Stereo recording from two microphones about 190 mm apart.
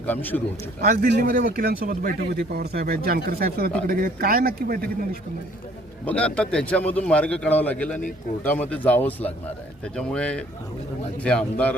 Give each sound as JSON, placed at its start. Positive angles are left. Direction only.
{"t": 0.0, "sound": "a man's voice", "side_deg": 10}
{"t": 0.9, "sound": "a man's voice", "side_deg": -45}
{"t": 6.1, "sound": "a man's voice", "side_deg": 5}